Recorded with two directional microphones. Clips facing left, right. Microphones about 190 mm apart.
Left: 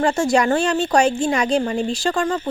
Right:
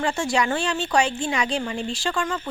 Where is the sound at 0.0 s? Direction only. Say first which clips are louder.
Left 6 dB; 40° left (ahead or behind).